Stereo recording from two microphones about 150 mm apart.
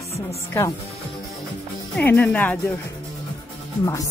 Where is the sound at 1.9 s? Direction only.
10° left (ahead or behind).